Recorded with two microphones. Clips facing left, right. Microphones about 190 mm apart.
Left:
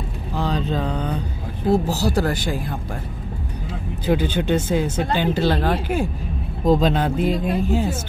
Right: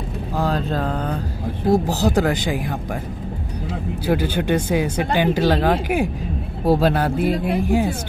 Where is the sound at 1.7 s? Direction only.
15° right (ahead or behind).